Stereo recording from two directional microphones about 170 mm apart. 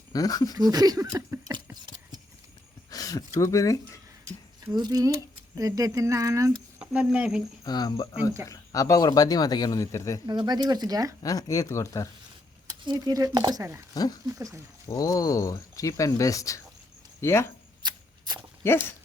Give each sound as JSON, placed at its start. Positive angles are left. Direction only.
{"t": 0.1, "sound": "speech", "side_deg": 20}
{"t": 0.5, "sound": "speech", "side_deg": -20}
{"t": 2.9, "sound": "speech", "side_deg": 20}
{"t": 4.3, "sound": "speech", "side_deg": -20}
{"t": 6.7, "sound": "speech", "side_deg": -5}
{"t": 7.6, "sound": "speech", "side_deg": 25}
{"t": 10.2, "sound": "speech", "side_deg": -25}
{"t": 11.2, "sound": "speech", "side_deg": 20}
{"t": 12.6, "sound": "speech", "side_deg": -25}
{"t": 13.9, "sound": "speech", "side_deg": 20}
{"t": 14.3, "sound": "speech", "side_deg": -20}
{"t": 14.8, "sound": "speech", "side_deg": 20}
{"t": 17.8, "sound": "a sound", "side_deg": -25}
{"t": 18.6, "sound": "speech", "side_deg": 15}